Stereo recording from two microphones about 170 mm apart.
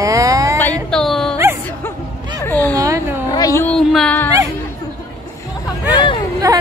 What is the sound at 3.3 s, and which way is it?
Speech, 20° left (ahead or behind).